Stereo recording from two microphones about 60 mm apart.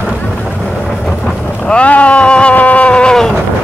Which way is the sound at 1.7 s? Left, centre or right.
Left.